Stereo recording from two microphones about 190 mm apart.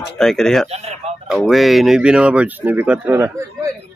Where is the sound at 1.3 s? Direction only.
Centre (ahead or behind).